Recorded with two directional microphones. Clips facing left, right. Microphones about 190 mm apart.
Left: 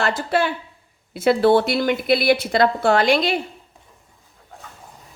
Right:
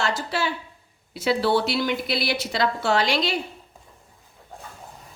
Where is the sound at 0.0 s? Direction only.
55° left (ahead or behind).